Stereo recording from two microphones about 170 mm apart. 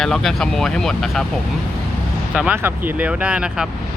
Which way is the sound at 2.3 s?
5° right (ahead or behind).